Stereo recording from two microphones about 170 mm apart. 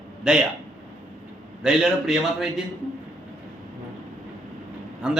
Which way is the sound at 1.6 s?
Centre (ahead or behind).